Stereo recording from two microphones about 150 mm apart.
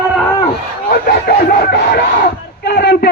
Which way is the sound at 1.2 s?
90° left.